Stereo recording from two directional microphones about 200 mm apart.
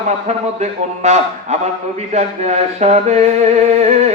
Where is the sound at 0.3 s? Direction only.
35° right (ahead or behind).